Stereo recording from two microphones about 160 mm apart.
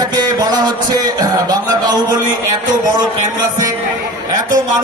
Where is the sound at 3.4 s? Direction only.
20° right (ahead or behind).